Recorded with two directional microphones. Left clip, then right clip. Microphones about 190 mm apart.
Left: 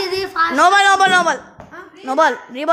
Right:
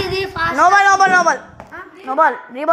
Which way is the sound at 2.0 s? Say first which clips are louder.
Even; 25° left (ahead or behind).